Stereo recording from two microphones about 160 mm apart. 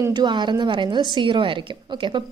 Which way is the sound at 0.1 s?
25° right (ahead or behind).